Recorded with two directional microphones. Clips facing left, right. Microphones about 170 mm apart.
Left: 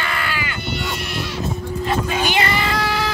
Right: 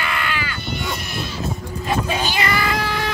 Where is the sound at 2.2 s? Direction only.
20° left (ahead or behind).